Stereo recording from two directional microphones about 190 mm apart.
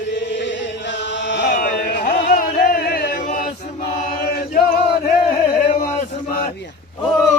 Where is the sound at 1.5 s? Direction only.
45° left (ahead or behind).